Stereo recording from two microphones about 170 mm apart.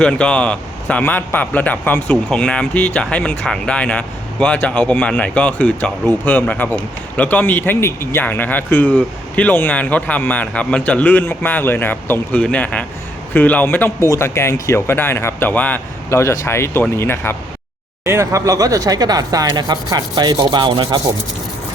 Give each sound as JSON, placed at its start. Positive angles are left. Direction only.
{"t": 0.0, "sound": "speech", "side_deg": 5}
{"t": 18.0, "sound": "speech", "side_deg": -15}